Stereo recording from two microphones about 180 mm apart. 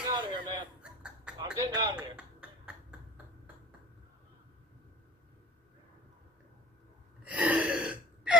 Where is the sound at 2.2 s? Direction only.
5° right (ahead or behind).